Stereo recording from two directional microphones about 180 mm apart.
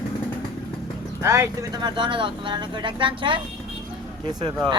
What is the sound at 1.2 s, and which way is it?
Speech, 15° right (ahead or behind).